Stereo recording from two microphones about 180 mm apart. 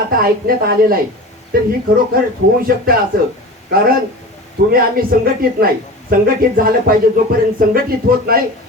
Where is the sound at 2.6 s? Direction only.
55° right (ahead or behind).